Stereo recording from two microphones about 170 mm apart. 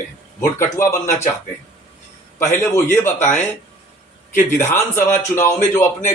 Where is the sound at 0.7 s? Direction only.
15° left (ahead or behind).